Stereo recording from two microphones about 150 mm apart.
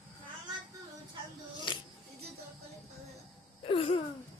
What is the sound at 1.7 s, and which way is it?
Music, 35° left (ahead or behind).